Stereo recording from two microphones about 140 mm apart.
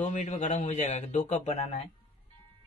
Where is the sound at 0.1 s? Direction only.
60° left (ahead or behind).